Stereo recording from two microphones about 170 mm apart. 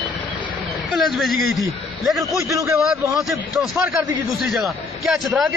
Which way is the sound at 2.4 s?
20° right (ahead or behind).